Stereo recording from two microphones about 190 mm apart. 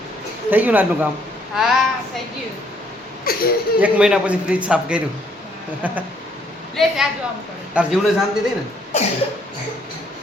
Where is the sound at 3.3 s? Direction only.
50° left (ahead or behind).